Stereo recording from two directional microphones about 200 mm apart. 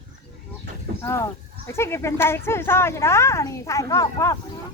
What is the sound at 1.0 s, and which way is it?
Speech, 15° left (ahead or behind).